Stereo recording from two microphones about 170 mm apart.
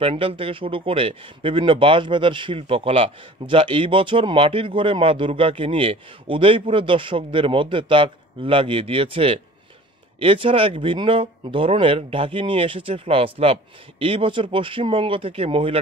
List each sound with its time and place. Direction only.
0.0 s speech: 35° right (ahead or behind)